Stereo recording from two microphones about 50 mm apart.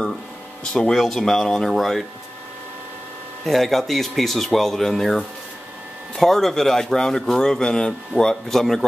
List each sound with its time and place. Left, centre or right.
0.7 s speech: centre
3.4 s speech: centre